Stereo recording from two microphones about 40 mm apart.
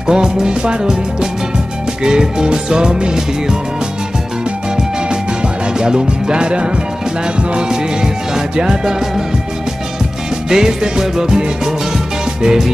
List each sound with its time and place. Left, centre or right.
0.0 s music: centre
5.8 s music: centre
10.5 s music: centre